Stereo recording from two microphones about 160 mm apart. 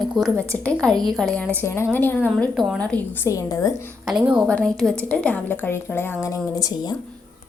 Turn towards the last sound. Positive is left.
turn(degrees=20)  # may be behind; listen again after turning